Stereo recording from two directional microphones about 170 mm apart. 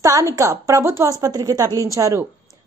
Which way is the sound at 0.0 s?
20° right (ahead or behind).